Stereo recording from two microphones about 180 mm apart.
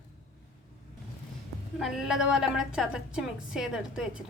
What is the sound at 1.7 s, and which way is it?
A woman's voice, centre (ahead or behind).